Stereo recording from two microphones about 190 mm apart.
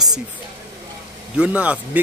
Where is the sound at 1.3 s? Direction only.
5° right (ahead or behind).